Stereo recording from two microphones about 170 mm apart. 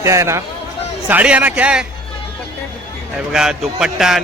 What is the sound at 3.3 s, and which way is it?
Speech, 5° right (ahead or behind).